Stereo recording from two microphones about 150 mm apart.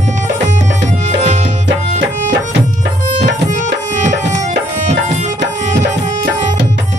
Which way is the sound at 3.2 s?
55° right (ahead or behind).